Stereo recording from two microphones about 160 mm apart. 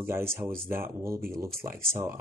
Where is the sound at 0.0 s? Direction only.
15° right (ahead or behind).